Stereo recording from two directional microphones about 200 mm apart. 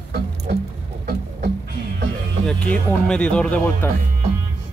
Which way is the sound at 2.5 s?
5° left (ahead or behind).